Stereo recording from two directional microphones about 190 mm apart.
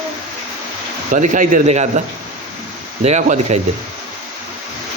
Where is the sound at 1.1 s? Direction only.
40° right (ahead or behind).